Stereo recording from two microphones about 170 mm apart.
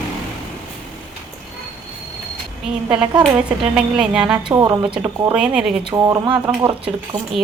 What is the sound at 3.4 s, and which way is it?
Speech, 5° right (ahead or behind).